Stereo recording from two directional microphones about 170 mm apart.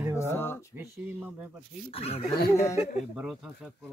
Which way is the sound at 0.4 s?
15° left (ahead or behind).